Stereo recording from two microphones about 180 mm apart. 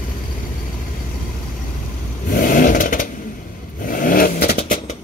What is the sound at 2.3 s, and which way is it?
Vehicle, 50° left (ahead or behind).